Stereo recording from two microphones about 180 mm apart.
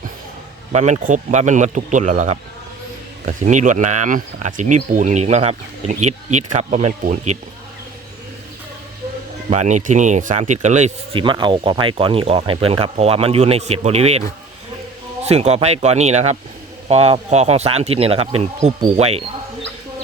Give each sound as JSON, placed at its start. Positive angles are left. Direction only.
{"t": 0.7, "sound": "speech", "side_deg": -40}
{"t": 9.5, "sound": "speech", "side_deg": -40}